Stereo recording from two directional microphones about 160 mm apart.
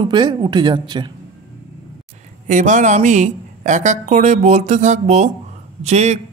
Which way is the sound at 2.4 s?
50° right (ahead or behind).